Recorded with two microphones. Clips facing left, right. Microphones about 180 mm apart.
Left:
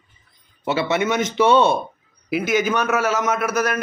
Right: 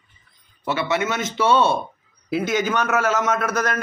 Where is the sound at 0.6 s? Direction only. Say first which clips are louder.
Left 2 dB; 25° left (ahead or behind).